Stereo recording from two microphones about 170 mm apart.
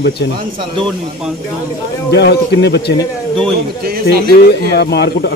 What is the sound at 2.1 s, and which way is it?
Speech, 85° left.